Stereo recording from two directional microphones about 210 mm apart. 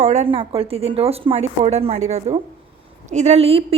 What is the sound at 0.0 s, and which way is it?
Speech, 35° right (ahead or behind).